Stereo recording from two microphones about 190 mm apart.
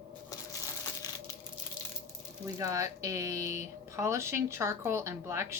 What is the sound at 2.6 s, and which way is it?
Speech, 15° right (ahead or behind).